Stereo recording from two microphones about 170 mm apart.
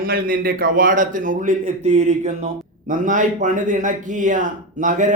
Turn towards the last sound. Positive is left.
turn(degrees=-50)  # may be behind; listen again after turning